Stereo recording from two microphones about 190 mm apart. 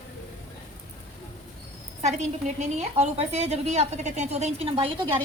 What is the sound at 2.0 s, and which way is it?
A woman's voice, 35° right (ahead or behind).